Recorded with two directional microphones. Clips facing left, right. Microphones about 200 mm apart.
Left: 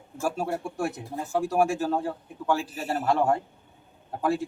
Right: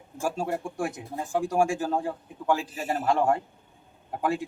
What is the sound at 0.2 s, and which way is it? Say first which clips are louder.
Speech: even; 15° right (ahead or behind).